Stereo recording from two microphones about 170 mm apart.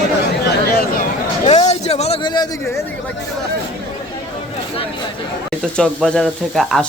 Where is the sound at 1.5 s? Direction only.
40° left (ahead or behind).